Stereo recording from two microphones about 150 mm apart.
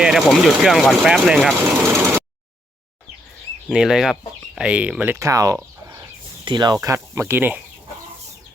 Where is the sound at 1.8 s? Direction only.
15° right (ahead or behind).